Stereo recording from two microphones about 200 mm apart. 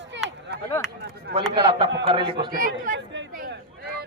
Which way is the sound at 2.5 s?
45° right (ahead or behind).